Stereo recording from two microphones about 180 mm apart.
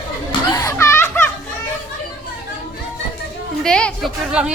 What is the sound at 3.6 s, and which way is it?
Speech, 5° left (ahead or behind).